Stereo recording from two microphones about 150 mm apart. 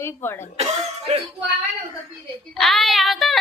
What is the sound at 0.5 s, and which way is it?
Speech, 45° right (ahead or behind).